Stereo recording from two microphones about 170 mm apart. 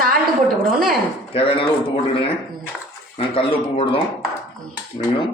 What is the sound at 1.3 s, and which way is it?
Speech, 35° left (ahead or behind).